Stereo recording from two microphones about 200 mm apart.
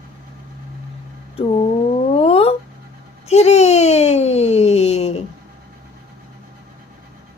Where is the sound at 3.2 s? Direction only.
30° left (ahead or behind).